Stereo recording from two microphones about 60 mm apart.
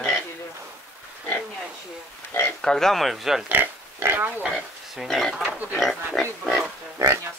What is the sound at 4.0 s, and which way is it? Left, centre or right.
Pig, right.